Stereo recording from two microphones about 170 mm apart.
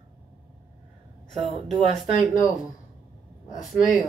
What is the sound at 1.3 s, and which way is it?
Speech, 40° right (ahead or behind).